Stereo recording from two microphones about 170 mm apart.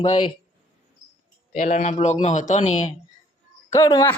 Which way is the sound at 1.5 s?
45° left (ahead or behind).